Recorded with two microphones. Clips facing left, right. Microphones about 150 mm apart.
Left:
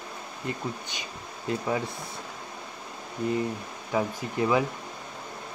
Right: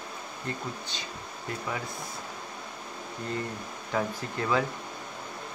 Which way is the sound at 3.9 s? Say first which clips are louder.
Left 3 dB; 15° left (ahead or behind).